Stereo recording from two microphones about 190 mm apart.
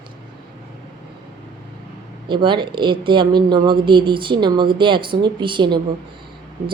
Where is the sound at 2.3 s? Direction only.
25° right (ahead or behind).